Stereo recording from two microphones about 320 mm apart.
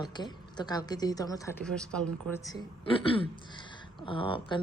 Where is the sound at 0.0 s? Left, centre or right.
Centre.